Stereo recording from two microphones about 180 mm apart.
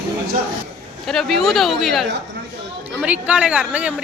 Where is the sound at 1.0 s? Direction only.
Centre (ahead or behind).